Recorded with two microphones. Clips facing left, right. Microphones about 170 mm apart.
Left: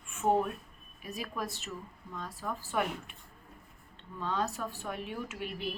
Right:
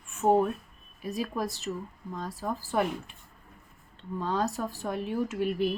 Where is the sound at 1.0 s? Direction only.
35° right (ahead or behind).